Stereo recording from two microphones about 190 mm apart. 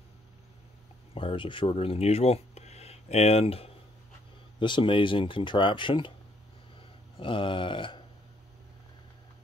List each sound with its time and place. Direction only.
1.1 s speech: 25° left (ahead or behind)
7.2 s speech: 25° left (ahead or behind)